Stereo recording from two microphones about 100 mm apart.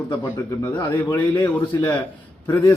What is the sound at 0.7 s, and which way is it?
A man's voice, 20° left (ahead or behind).